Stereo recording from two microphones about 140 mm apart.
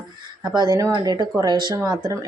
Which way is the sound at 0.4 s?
30° right (ahead or behind).